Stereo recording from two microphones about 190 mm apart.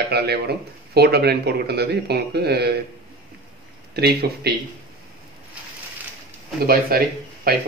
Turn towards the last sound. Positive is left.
turn(degrees=-50)  # may be behind; listen again after turning